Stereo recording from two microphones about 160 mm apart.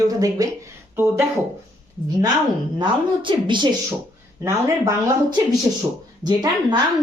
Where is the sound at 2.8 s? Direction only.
30° right (ahead or behind).